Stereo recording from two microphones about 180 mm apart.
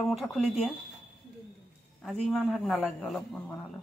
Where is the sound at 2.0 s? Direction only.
Centre (ahead or behind).